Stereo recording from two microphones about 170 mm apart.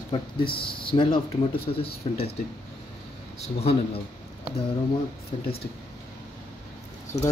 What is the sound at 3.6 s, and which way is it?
Speech, 35° left (ahead or behind).